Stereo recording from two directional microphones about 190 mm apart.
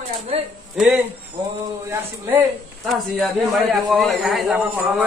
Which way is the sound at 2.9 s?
Centre (ahead or behind).